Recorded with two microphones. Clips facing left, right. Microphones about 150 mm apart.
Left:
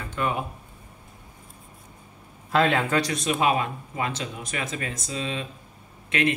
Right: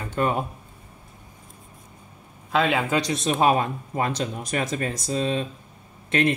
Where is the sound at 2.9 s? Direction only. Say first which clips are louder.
Right 1 dB; 20° right (ahead or behind).